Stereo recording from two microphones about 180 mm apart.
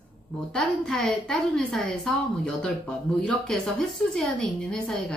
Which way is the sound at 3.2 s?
5° left (ahead or behind).